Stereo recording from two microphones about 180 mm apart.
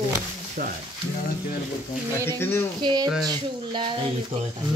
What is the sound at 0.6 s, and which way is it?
Speech, 50° right (ahead or behind).